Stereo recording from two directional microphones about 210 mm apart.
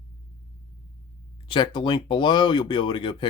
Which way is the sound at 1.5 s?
25° left (ahead or behind).